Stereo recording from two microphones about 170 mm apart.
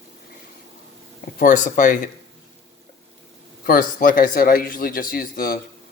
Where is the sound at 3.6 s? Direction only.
55° left (ahead or behind).